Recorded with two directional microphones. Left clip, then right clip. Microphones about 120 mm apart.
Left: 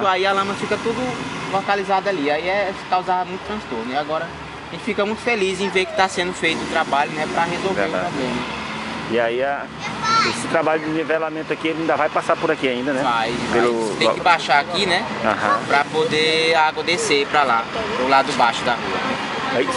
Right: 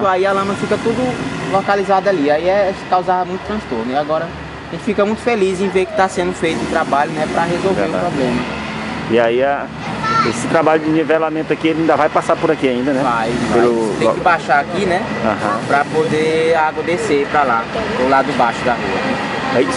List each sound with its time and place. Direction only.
0.0 s speech: centre (ahead or behind)
1.7 s speech: 10° right (ahead or behind)
4.9 s speech: 5° right (ahead or behind)
9.1 s speech: 10° right (ahead or behind)
12.4 s speech: 5° left (ahead or behind)
17.3 s speech: 20° left (ahead or behind)
18.1 s speech: 10° left (ahead or behind)